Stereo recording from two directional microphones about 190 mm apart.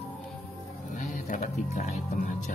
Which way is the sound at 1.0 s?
45° left (ahead or behind).